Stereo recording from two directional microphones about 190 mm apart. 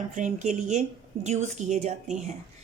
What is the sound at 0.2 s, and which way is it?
A woman's voice, 40° right (ahead or behind).